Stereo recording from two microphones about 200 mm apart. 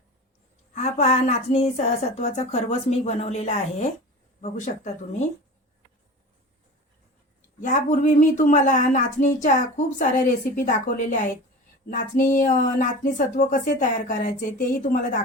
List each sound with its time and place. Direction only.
0.8 s speech: 35° left (ahead or behind)
7.6 s speech: 40° left (ahead or behind)